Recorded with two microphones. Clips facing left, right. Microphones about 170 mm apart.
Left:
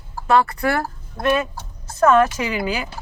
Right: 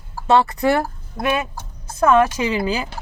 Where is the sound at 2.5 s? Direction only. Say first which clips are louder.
Right 2 dB; 30° right (ahead or behind).